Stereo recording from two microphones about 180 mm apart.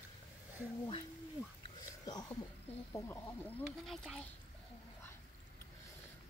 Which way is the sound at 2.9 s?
15° left (ahead or behind).